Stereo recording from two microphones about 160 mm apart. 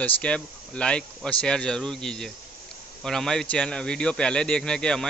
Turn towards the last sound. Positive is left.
turn(degrees=5)  # may be behind; listen again after turning